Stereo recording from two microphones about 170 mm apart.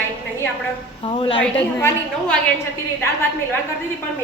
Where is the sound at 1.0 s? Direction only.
30° left (ahead or behind).